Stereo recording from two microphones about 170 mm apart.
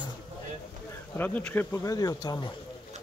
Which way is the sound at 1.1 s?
10° left (ahead or behind).